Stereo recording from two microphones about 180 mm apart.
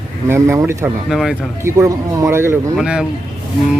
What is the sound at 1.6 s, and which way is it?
Speech, 15° right (ahead or behind).